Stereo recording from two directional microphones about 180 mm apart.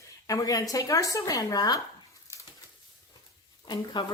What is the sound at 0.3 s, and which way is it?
Speech, 20° left (ahead or behind).